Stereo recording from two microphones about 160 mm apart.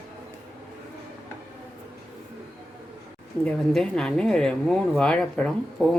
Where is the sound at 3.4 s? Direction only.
5° left (ahead or behind).